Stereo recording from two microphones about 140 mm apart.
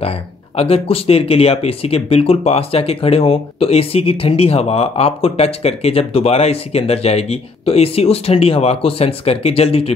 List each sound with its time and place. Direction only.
0.6 s speech: 45° left (ahead or behind)